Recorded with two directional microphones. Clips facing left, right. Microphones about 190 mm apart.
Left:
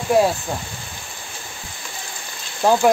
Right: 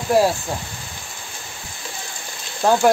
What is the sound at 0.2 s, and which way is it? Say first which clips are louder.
Speech: even; centre (ahead or behind).